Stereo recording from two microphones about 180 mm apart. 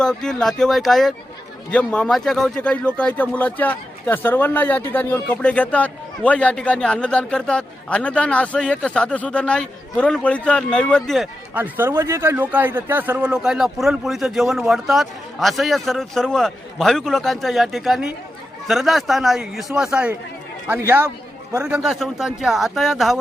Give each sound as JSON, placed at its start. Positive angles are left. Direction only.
{"t": 0.0, "sound": "speech", "side_deg": 5}
{"t": 11.5, "sound": "a man's voice", "side_deg": -10}